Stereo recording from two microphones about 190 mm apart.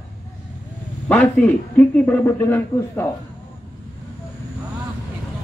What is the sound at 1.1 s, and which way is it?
A man's voice, 10° left (ahead or behind).